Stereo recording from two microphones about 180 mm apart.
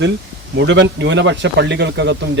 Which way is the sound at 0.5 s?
85° right.